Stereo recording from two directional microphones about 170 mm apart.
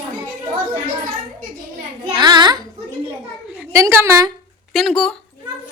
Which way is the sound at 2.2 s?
25° right (ahead or behind).